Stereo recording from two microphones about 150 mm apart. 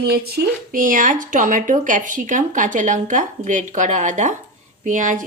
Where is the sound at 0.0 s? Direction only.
90° right.